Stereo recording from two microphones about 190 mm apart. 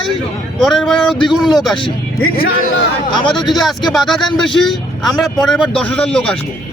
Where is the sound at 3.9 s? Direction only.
Centre (ahead or behind).